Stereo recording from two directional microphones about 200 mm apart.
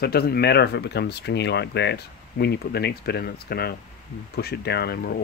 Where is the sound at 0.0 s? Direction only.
50° left (ahead or behind).